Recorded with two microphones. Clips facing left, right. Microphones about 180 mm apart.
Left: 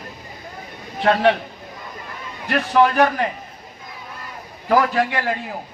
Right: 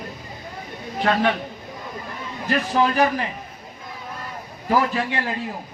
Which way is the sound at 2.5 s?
65° left (ahead or behind).